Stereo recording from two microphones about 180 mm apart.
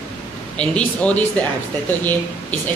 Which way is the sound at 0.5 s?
5° left (ahead or behind).